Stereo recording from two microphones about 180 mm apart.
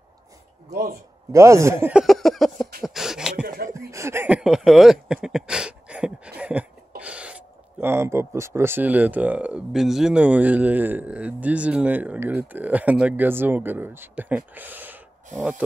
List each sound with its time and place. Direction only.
0.7 s speech: 55° right (ahead or behind)
1.3 s speech: 15° right (ahead or behind); by 2.7 s centre (ahead or behind)
2.8 s beatboxing: centre (ahead or behind)
3.4 s a sound: 55° right (ahead or behind)
3.9 s a sound: 15° right (ahead or behind)
7.8 s speech: 15° right (ahead or behind)